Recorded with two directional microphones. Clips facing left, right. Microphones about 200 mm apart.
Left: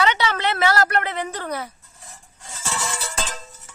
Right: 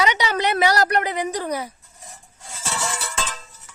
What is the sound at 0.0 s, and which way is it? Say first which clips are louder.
A woman's voice: even; 15° right (ahead or behind).